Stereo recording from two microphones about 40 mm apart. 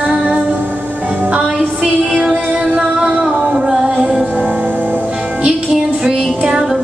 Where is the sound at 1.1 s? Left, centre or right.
Right.